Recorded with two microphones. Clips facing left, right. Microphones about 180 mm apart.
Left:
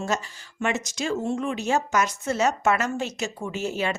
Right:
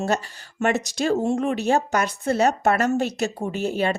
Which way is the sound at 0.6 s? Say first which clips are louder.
Right 5 dB; 45° right (ahead or behind).